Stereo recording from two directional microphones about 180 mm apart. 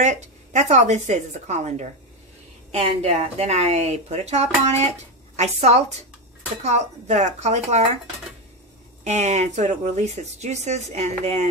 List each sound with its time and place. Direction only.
0.0 s speech: 40° right (ahead or behind)
9.0 s speech: 40° right (ahead or behind)